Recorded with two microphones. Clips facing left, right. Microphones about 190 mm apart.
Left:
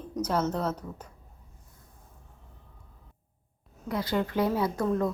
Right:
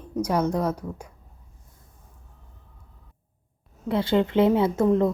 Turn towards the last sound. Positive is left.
turn(degrees=-20)  # may be behind; listen again after turning